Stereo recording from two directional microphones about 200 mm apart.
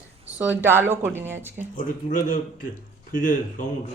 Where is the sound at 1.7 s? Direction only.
40° left (ahead or behind).